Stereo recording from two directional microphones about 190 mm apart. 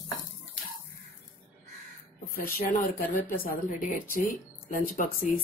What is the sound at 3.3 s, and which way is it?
Speech, 45° left (ahead or behind).